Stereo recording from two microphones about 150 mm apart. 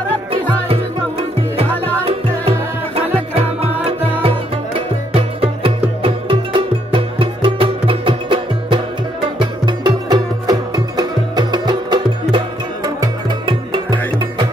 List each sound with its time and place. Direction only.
3.8 s music: 35° right (ahead or behind)
13.5 s music: 35° right (ahead or behind)